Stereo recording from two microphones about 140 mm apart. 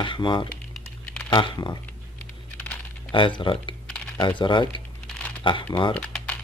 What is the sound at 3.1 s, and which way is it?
Speech, 35° left (ahead or behind).